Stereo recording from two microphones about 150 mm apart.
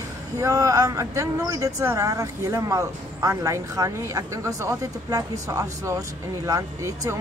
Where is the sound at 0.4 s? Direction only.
20° right (ahead or behind).